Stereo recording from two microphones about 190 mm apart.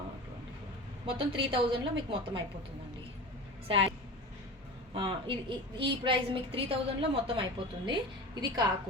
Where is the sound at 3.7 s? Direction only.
30° right (ahead or behind).